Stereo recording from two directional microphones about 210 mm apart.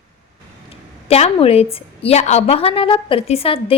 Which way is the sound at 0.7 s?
30° left (ahead or behind).